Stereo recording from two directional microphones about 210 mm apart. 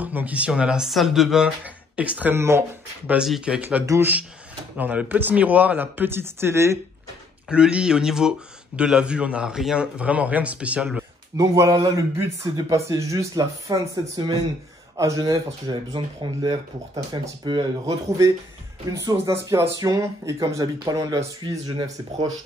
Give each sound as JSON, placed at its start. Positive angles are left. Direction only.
{"t": 0.0, "sound": "speech", "side_deg": -5}
{"t": 11.3, "sound": "speech", "side_deg": -15}